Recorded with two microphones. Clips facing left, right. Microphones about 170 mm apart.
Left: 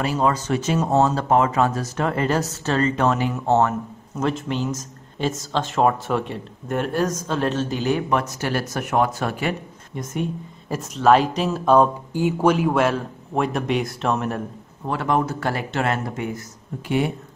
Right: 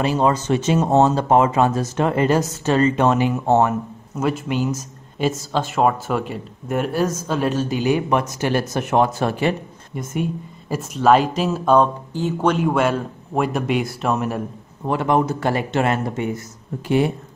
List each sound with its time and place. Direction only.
0.0 s speech: 25° right (ahead or behind)
9.9 s speech: 5° right (ahead or behind)
14.9 s speech: 20° right (ahead or behind)
16.8 s speech: 35° right (ahead or behind)